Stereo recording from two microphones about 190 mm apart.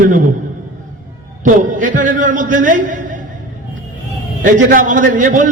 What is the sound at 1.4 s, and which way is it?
A man's voice, 45° right (ahead or behind).